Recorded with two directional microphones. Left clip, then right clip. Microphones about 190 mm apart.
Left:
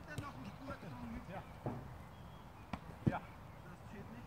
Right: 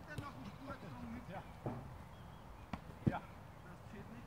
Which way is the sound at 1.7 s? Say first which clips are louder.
Left 1 dB; 50° right (ahead or behind).